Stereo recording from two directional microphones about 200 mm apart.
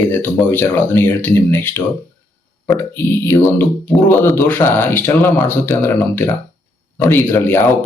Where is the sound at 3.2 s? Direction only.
10° left (ahead or behind).